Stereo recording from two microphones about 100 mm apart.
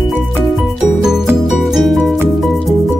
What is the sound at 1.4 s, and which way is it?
Music, centre (ahead or behind).